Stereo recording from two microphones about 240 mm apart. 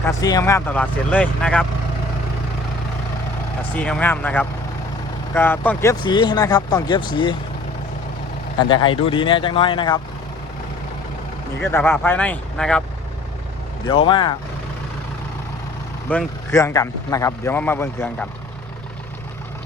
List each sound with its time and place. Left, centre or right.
0.0 s a man's voice: centre
3.8 s a man's voice: centre
8.5 s speech: centre
11.6 s a man's voice: centre
13.8 s speech: left
16.0 s a man's voice: centre